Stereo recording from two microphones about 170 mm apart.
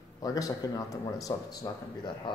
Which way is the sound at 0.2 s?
20° left (ahead or behind).